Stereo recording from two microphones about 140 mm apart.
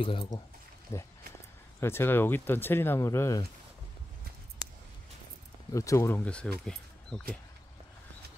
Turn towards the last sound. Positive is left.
turn(degrees=5)  # may be behind; listen again after turning